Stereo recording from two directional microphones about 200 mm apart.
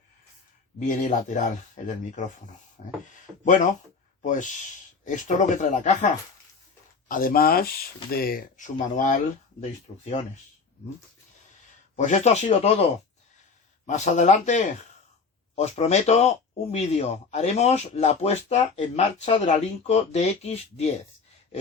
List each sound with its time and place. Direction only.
0.8 s speech: 40° left (ahead or behind)
7.1 s speech: 45° left (ahead or behind)
11.9 s speech: 35° left (ahead or behind)
13.8 s speech: 35° left (ahead or behind)